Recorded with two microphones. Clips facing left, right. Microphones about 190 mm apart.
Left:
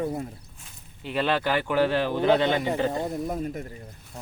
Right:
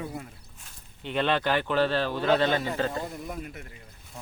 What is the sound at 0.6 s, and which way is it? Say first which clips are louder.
Speech: right 2 dB; 5° left (ahead or behind).